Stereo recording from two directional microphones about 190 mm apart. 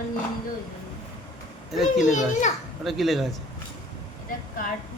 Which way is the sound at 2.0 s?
40° left (ahead or behind).